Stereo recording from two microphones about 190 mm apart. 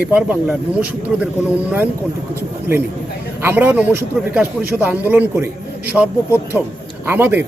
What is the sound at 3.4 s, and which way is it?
A man's voice, 10° right (ahead or behind).